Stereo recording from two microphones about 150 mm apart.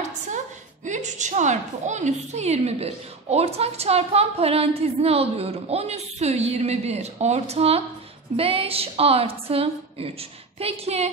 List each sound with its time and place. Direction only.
0.8 s a woman's voice: 55° right (ahead or behind)